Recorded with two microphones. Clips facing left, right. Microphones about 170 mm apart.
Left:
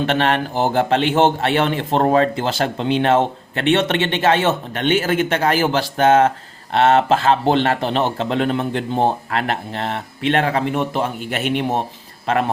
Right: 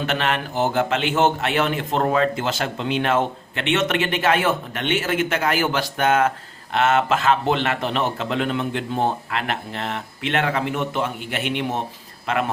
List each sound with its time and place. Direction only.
0.0 s a man's voice: 35° left (ahead or behind)